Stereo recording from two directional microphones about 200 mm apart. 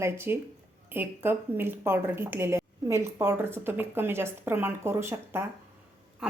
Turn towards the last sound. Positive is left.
turn(degrees=-10)  # may be behind; listen again after turning